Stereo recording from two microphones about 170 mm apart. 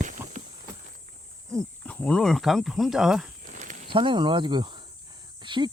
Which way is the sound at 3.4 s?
50° right (ahead or behind).